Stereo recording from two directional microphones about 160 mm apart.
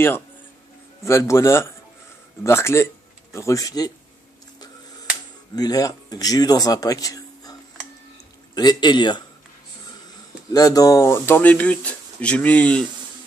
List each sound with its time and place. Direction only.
1.0 s a man's voice: 20° left (ahead or behind)
5.6 s speech: 25° left (ahead or behind)
8.5 s a man's voice: 25° left (ahead or behind)
10.5 s speech: 20° left (ahead or behind)